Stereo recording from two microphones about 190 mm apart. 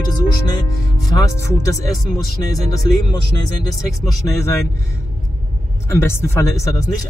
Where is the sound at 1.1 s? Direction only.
15° left (ahead or behind).